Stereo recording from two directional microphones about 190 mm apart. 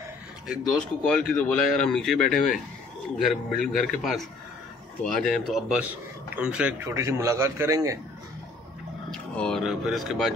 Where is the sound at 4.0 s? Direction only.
Centre (ahead or behind); by 8.0 s 15° right (ahead or behind).